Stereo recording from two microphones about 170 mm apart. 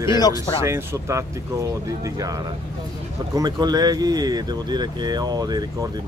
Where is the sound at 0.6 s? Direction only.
15° right (ahead or behind).